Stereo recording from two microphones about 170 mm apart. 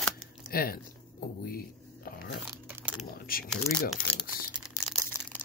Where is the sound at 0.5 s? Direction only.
60° left (ahead or behind).